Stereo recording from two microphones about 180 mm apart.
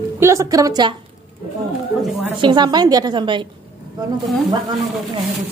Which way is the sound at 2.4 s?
25° right (ahead or behind).